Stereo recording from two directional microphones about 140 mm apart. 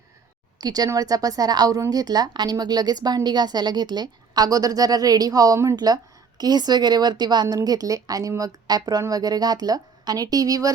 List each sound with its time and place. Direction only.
0.6 s a woman's voice: 25° right (ahead or behind)